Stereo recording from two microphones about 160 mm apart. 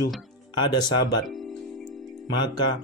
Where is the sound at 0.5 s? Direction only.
25° left (ahead or behind).